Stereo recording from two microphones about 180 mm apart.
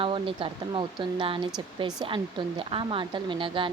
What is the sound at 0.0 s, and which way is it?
A woman's voice, 30° right (ahead or behind).